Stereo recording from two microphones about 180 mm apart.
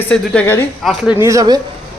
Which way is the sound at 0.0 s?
10° left (ahead or behind).